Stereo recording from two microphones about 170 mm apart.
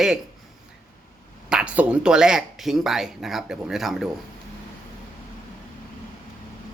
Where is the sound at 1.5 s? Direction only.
5° right (ahead or behind).